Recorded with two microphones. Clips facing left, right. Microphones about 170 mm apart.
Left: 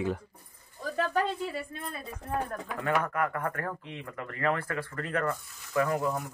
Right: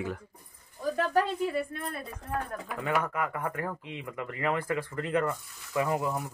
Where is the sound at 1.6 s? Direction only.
60° right (ahead or behind).